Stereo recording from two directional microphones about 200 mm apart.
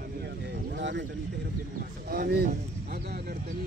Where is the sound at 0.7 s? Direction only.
60° right (ahead or behind).